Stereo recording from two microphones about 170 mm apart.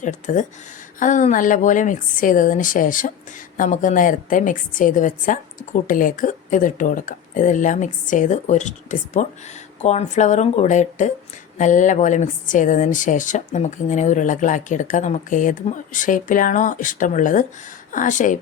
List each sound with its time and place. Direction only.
0.0 s speech: 45° left (ahead or behind)